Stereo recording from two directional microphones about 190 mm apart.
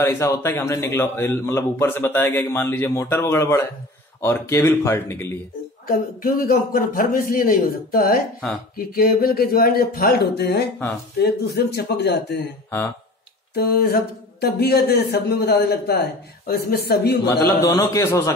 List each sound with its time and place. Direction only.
0.0 s a man's voice: 15° left (ahead or behind)
5.9 s a man's voice: 50° left (ahead or behind)
13.6 s speech: 55° left (ahead or behind)
17.5 s a man's voice: 20° left (ahead or behind)